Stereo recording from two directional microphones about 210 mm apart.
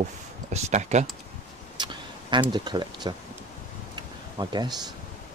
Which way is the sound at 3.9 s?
20° right (ahead or behind).